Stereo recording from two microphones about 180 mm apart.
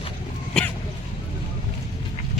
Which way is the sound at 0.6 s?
5° left (ahead or behind).